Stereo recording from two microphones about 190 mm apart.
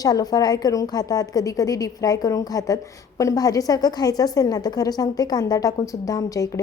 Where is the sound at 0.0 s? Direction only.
20° left (ahead or behind).